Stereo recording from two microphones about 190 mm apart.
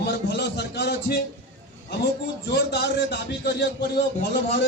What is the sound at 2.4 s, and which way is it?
A man's voice, 60° left (ahead or behind).